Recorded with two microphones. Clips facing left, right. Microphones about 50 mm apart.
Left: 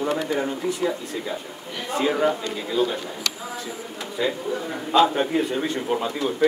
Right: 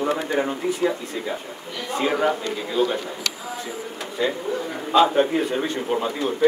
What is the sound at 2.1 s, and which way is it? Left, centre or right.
Speech, centre.